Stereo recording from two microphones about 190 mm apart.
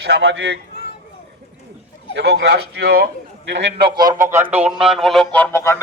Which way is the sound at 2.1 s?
60° right (ahead or behind).